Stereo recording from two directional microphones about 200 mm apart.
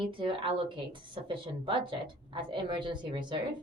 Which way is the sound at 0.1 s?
25° right (ahead or behind).